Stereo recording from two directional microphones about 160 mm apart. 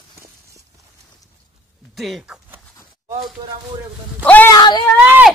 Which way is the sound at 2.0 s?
Centre (ahead or behind).